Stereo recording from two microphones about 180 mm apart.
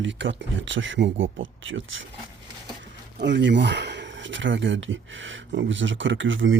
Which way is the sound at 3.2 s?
75° right (ahead or behind).